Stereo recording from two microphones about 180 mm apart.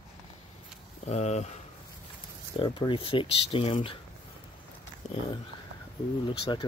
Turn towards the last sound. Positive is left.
turn(degrees=25)  # may be behind; listen again after turning